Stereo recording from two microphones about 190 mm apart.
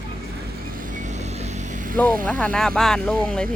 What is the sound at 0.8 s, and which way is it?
Vehicle, 40° right (ahead or behind).